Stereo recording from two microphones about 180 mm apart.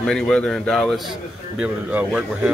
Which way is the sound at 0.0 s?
5° left (ahead or behind).